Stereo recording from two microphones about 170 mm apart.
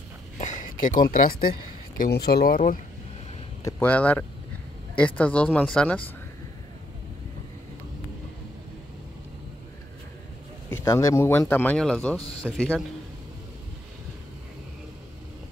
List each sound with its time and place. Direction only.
0.4 s speech: 45° left (ahead or behind)
2.0 s speech: 70° left (ahead or behind)
3.6 s speech: 10° left (ahead or behind)
10.7 s speech: 15° left (ahead or behind)